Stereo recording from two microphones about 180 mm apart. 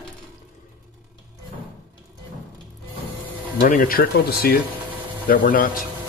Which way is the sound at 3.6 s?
50° left (ahead or behind).